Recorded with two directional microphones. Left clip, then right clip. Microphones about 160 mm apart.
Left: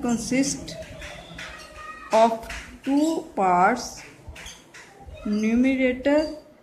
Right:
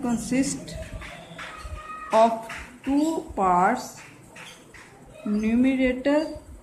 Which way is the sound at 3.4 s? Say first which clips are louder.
Left 1 dB; 20° left (ahead or behind).